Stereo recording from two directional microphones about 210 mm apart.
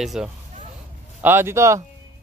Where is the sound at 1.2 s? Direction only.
10° right (ahead or behind).